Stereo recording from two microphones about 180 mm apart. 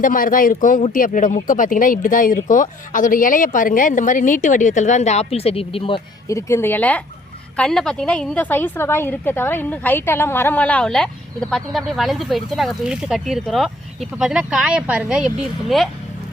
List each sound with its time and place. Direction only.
0.0 s speech: 50° left (ahead or behind); by 6.0 s 30° left (ahead or behind)
6.2 s a woman's voice: 15° left (ahead or behind); by 15.9 s centre (ahead or behind)